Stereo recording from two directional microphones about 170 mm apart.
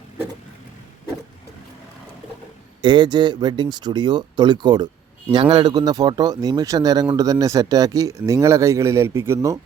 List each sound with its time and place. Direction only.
2.8 s speech: 25° right (ahead or behind)